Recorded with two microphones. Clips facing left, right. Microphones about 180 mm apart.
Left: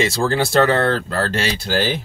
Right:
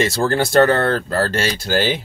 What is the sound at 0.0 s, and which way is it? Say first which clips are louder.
Speech: right 1 dB; centre (ahead or behind).